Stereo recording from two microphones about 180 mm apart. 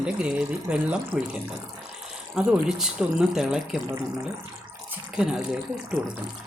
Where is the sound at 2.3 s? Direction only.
5° right (ahead or behind).